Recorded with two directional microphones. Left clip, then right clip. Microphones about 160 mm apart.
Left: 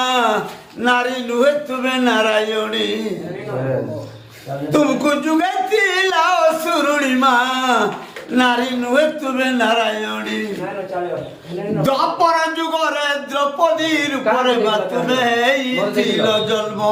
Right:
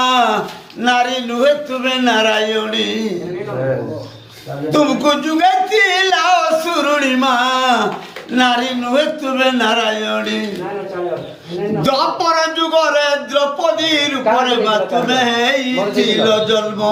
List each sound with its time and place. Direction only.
0.0 s a sound: 20° left (ahead or behind)
0.8 s a man's voice: 20° left (ahead or behind)
4.7 s a man's voice: 20° left (ahead or behind)
11.8 s a man's voice: 25° left (ahead or behind)